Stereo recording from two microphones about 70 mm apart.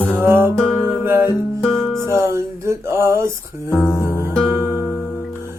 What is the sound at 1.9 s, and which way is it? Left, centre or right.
Music, right.